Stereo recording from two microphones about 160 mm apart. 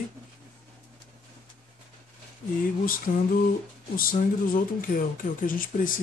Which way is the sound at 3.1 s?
55° left (ahead or behind).